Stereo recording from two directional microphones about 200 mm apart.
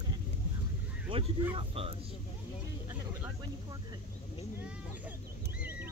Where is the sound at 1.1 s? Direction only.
25° right (ahead or behind).